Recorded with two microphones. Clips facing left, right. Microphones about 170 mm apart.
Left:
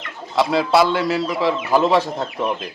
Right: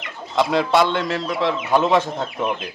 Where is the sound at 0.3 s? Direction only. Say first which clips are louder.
Left 1 dB; centre (ahead or behind).